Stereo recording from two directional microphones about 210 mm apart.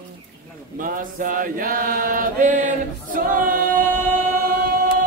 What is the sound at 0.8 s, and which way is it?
Chant, 40° right (ahead or behind).